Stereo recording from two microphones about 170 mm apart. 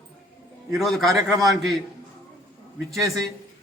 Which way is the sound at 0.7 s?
Centre (ahead or behind).